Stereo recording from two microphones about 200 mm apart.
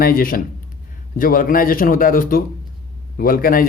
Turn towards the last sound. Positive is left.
turn(degrees=45)  # may be behind; listen again after turning